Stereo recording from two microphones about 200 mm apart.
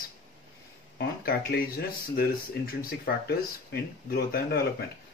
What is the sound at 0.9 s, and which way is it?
Speech, 50° left (ahead or behind).